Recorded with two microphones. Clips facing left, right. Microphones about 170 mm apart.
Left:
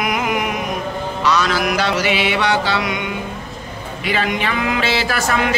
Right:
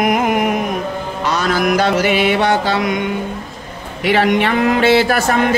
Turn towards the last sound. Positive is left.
turn(degrees=-50)  # may be behind; listen again after turning